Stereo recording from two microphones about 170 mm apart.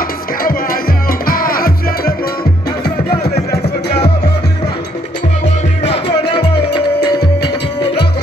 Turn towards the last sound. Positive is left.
turn(degrees=75)  # may be behind; listen again after turning